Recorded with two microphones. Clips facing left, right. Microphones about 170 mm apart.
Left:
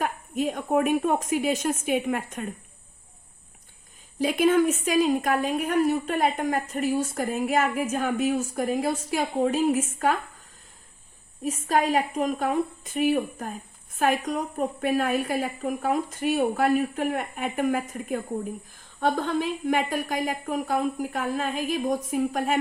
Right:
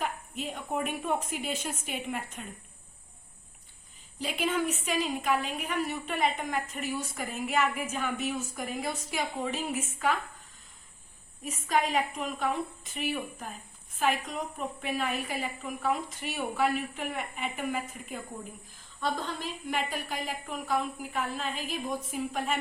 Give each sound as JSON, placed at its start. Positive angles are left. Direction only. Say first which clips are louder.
{"t": 0.0, "sound": "a woman's voice", "louder": "left 8 dB", "side_deg": 50}
{"t": 4.2, "sound": "a woman's voice", "louder": "left 10 dB", "side_deg": 45}
{"t": 6.1, "sound": "a woman's voice", "louder": "left 6 dB", "side_deg": 55}
{"t": 6.7, "sound": "a woman's voice", "louder": "left 9 dB", "side_deg": 40}
{"t": 11.4, "sound": "a woman's voice", "louder": "left 5 dB", "side_deg": 40}